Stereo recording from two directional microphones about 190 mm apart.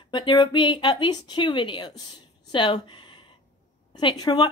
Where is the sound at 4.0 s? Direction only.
25° left (ahead or behind).